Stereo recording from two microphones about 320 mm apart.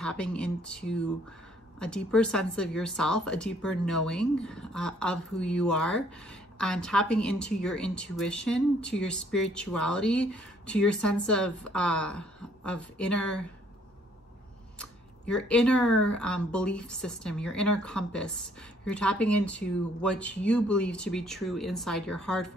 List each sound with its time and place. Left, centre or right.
0.0 s speech: centre
14.8 s speech: centre